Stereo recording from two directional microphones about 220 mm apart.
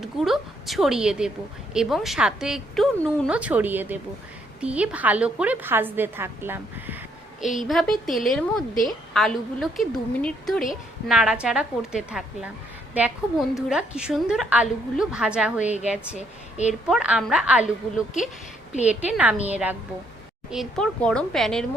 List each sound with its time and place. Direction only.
0.0 s a woman's voice: centre (ahead or behind)
13.6 s speech: 5° right (ahead or behind)
16.1 s a woman's voice: 30° left (ahead or behind)
16.9 s a woman's voice: 5° right (ahead or behind)